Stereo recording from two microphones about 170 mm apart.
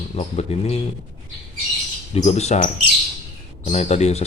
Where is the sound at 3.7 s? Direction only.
40° left (ahead or behind).